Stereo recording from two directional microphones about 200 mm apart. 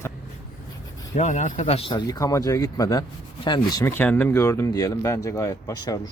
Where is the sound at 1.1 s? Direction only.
35° left (ahead or behind).